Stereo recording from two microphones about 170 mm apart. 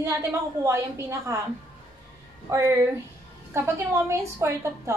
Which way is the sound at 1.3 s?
15° right (ahead or behind).